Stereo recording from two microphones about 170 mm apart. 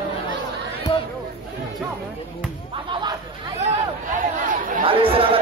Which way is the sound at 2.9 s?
25° right (ahead or behind).